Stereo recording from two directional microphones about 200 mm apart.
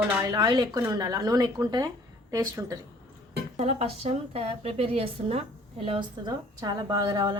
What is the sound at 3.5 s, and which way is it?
A woman's voice, 30° right (ahead or behind).